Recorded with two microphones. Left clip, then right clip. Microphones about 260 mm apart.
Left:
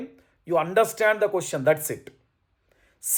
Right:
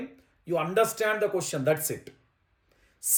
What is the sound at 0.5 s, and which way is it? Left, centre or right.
Speech, centre.